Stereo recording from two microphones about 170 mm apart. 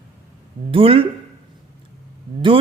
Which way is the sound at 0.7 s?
30° right (ahead or behind).